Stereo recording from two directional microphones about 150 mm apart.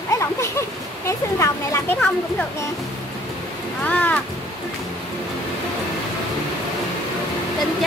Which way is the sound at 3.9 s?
10° left (ahead or behind).